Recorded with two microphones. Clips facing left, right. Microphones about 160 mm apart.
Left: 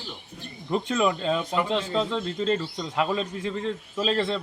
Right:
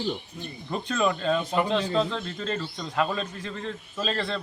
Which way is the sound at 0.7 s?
15° left (ahead or behind).